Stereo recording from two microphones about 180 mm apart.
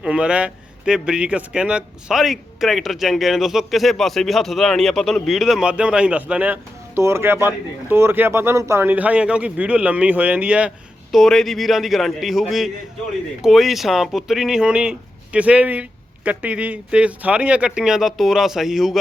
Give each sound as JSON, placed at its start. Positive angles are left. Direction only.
{"t": 0.0, "sound": "speech", "side_deg": -5}